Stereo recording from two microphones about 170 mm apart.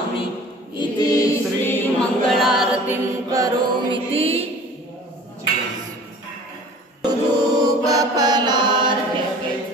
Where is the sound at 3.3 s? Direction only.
20° right (ahead or behind).